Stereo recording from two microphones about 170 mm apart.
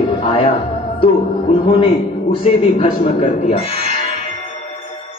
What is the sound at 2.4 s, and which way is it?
Speech, 35° left (ahead or behind).